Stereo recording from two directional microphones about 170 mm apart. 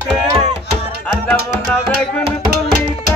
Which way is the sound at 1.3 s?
15° left (ahead or behind).